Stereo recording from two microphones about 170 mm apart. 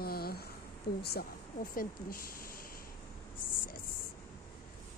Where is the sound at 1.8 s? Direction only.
55° left (ahead or behind).